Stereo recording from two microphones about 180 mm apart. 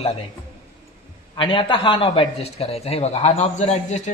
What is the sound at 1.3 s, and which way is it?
A man's voice, 25° left (ahead or behind).